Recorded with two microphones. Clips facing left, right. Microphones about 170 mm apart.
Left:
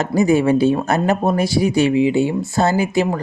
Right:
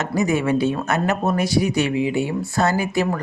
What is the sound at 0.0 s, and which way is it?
Speech, 30° left (ahead or behind).